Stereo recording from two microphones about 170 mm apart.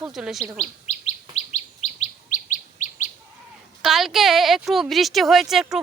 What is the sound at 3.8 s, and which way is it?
A woman's voice, centre (ahead or behind).